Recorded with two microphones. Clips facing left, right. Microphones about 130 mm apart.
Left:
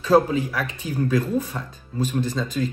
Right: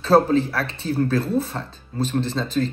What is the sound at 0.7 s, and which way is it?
Speech, 15° left (ahead or behind).